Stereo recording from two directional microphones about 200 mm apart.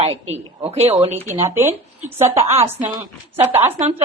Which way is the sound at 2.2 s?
15° right (ahead or behind).